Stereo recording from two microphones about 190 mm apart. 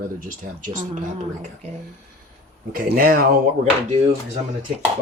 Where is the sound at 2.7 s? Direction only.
50° right (ahead or behind).